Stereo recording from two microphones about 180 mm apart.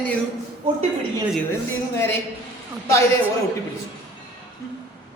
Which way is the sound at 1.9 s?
15° left (ahead or behind).